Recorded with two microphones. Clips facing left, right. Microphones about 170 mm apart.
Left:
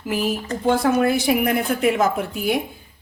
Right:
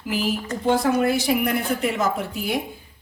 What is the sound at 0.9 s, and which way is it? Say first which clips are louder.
Speech: left 2 dB; 55° left (ahead or behind).